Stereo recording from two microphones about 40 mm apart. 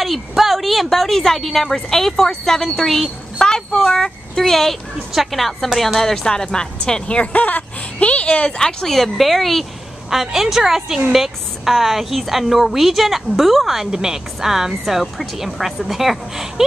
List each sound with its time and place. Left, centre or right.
0.0 s a woman's voice: centre
3.3 s a sound: centre
3.8 s a woman's voice: centre; by 7.2 s left
7.3 s speech: left
8.0 s a woman's voice: left
8.5 s a woman's voice: centre
8.9 s a woman's voice: centre
10.0 s a woman's voice: centre
13.7 s speech: centre